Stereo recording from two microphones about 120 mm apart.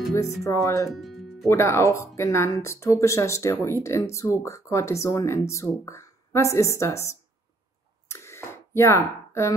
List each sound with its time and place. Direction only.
0.4 s speech: 25° left (ahead or behind)
0.9 s music: centre (ahead or behind)
1.5 s speech: 25° left (ahead or behind)
8.1 s a sound: 20° left (ahead or behind)